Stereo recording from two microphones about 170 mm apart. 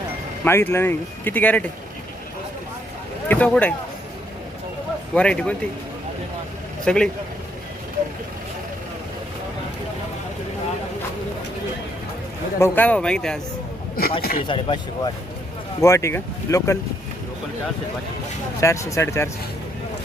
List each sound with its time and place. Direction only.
0.4 s speech: 15° left (ahead or behind)
3.2 s speech: 10° left (ahead or behind)
5.1 s speech: 5° left (ahead or behind)
6.8 s speech: 5° left (ahead or behind)
12.5 s speech: 15° left (ahead or behind)
14.2 s speech: 60° left (ahead or behind)
14.4 s speech: 30° left (ahead or behind)
15.8 s speech: 15° left (ahead or behind)
18.6 s speech: 15° left (ahead or behind)